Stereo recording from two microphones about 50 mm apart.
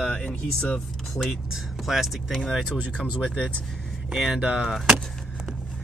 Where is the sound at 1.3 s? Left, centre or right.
Centre.